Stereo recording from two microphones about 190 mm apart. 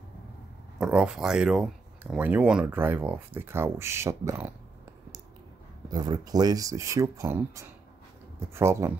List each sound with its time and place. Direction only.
0.7 s speech: 5° right (ahead or behind)
5.9 s speech: 20° right (ahead or behind)